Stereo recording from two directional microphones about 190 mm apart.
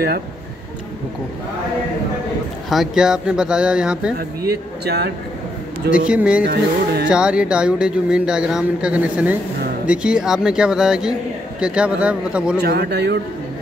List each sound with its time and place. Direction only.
2.7 s speech: centre (ahead or behind)
4.4 s speech: 60° right (ahead or behind)
5.9 s speech: 5° right (ahead or behind)
6.4 s speech: 55° right (ahead or behind)
7.1 s speech: 5° right (ahead or behind)
12.6 s speech: 55° right (ahead or behind)